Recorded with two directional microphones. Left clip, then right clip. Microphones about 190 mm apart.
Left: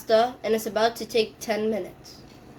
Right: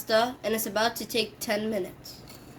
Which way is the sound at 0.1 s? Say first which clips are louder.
Left 4 dB; 20° right (ahead or behind).